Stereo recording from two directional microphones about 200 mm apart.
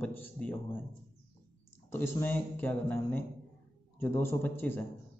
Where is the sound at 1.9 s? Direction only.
10° left (ahead or behind).